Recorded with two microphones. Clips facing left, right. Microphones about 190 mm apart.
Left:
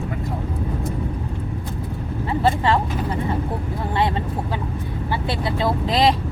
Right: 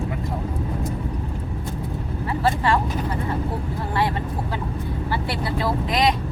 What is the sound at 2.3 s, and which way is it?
Speech, 25° left (ahead or behind).